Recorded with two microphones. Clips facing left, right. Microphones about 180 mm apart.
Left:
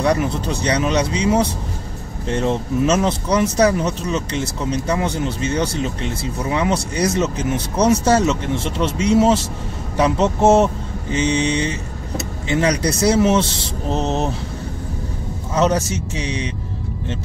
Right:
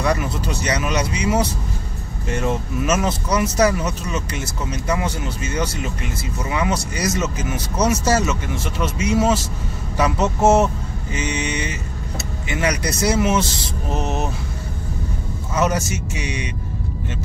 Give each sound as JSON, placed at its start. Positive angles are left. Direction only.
{"t": 0.0, "sound": "speech", "side_deg": 30}
{"t": 15.5, "sound": "speech", "side_deg": 30}